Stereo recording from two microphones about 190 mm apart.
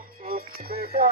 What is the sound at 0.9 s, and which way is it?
Music, 55° right (ahead or behind).